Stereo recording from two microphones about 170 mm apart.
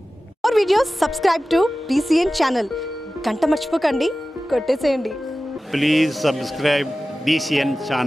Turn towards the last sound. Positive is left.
turn(degrees=0)  # may be behind; listen again after turning